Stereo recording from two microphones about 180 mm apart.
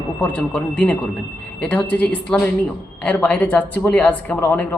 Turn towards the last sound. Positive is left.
turn(degrees=10)  # may be behind; listen again after turning